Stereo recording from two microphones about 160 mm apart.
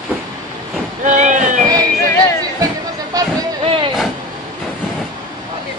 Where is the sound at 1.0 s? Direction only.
50° right (ahead or behind).